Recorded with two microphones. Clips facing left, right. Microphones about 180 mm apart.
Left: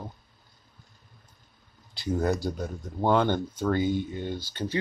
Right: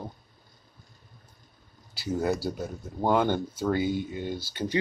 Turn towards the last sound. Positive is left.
turn(degrees=-10)  # may be behind; listen again after turning